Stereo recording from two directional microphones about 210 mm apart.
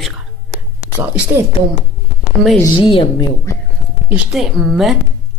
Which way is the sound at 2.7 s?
25° left (ahead or behind).